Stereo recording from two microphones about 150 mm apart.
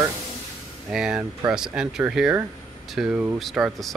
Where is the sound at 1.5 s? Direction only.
5° right (ahead or behind).